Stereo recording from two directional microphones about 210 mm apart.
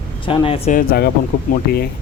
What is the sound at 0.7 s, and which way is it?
Speech, 45° left (ahead or behind).